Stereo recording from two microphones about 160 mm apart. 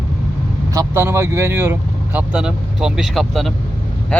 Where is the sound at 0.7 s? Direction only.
20° right (ahead or behind).